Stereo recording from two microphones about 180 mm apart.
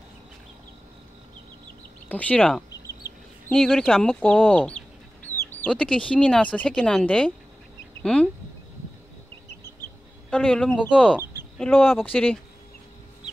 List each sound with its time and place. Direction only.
2.0 s speech: 10° left (ahead or behind)
10.3 s speech: 5° left (ahead or behind)